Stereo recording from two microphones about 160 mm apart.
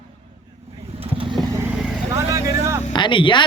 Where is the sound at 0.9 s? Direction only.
35° right (ahead or behind).